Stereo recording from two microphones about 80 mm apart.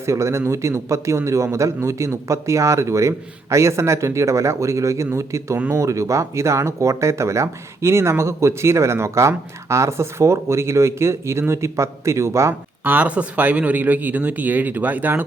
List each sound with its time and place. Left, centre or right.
0.0 s speech: right
12.8 s speech: centre